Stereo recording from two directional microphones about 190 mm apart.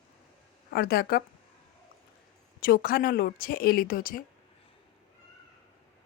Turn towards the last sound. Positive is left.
turn(degrees=50)  # may be behind; listen again after turning